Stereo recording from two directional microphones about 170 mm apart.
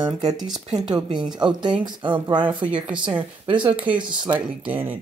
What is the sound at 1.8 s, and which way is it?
Speech, 25° right (ahead or behind).